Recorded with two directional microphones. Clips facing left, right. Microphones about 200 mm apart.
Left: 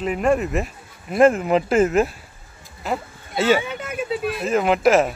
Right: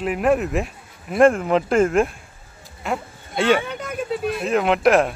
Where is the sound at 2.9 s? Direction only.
5° left (ahead or behind).